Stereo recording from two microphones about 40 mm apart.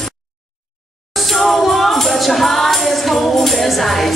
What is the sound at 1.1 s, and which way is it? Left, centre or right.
Music, centre.